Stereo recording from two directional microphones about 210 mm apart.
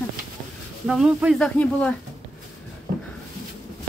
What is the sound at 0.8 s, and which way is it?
A man's voice, 5° right (ahead or behind).